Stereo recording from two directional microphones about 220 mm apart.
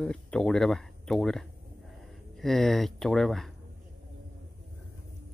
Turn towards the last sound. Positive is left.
turn(degrees=0)  # may be behind; listen again after turning